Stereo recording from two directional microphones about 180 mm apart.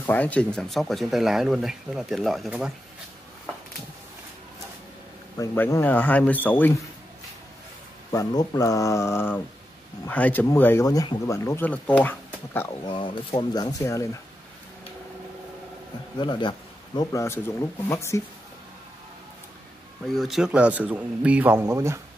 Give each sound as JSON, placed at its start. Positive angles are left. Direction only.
{"t": 0.0, "sound": "speech", "side_deg": 10}
{"t": 5.4, "sound": "speech", "side_deg": 15}
{"t": 8.1, "sound": "speech", "side_deg": 20}
{"t": 12.8, "sound": "speech", "side_deg": 25}
{"t": 16.2, "sound": "speech", "side_deg": 25}
{"t": 20.1, "sound": "speech", "side_deg": 0}